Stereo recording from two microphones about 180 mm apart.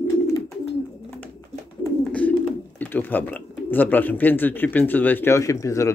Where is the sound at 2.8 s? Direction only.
10° left (ahead or behind).